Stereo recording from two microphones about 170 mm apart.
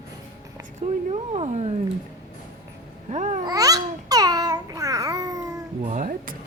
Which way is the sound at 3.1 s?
45° right (ahead or behind).